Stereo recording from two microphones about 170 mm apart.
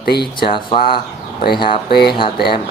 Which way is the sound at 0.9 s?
30° left (ahead or behind).